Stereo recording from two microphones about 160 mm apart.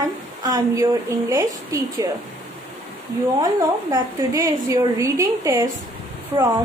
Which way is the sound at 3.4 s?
20° right (ahead or behind).